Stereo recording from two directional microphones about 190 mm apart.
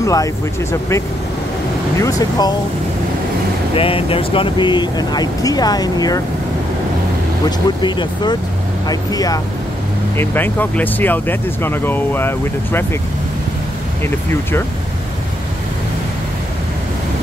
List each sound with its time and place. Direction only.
0.0 s speech: 15° left (ahead or behind)
3.7 s speech: 30° left (ahead or behind)
7.4 s speech: 25° left (ahead or behind)